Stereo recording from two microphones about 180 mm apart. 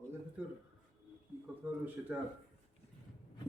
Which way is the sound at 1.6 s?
10° right (ahead or behind).